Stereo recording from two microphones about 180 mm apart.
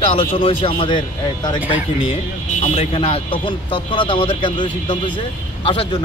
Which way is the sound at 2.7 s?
35° left (ahead or behind).